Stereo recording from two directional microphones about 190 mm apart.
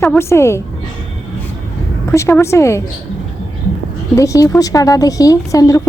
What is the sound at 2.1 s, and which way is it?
Moo, 15° left (ahead or behind).